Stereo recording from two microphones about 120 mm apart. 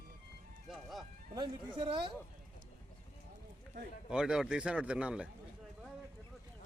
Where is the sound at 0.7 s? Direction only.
Centre (ahead or behind).